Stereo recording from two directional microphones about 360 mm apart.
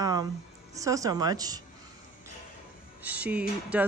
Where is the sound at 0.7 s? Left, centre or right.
Centre.